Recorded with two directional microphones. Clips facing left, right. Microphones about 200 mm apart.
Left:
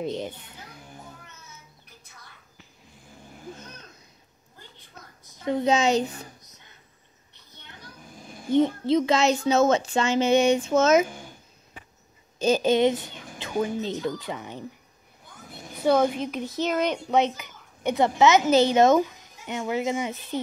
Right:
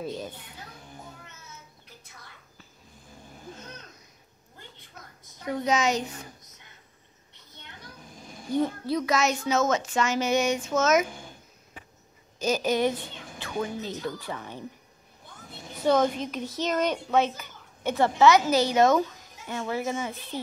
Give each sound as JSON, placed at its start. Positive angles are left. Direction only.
{"t": 0.0, "sound": "a child's voice", "side_deg": 20}
{"t": 5.4, "sound": "a child's voice", "side_deg": 25}
{"t": 8.5, "sound": "a child's voice", "side_deg": 20}
{"t": 12.4, "sound": "a child's voice", "side_deg": 25}
{"t": 15.8, "sound": "a child's voice", "side_deg": 10}